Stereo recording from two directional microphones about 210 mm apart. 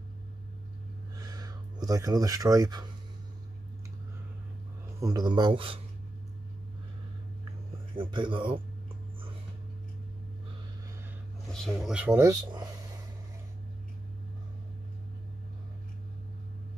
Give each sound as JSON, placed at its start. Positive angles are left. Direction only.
{"t": 1.1, "sound": "a sound", "side_deg": -15}
{"t": 5.0, "sound": "speech", "side_deg": -20}
{"t": 7.9, "sound": "speech", "side_deg": -25}
{"t": 11.5, "sound": "speech", "side_deg": 0}